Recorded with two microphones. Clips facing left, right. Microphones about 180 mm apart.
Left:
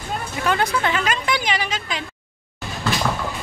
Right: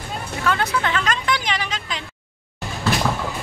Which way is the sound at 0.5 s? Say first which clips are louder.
Left 1 dB; 15° left (ahead or behind).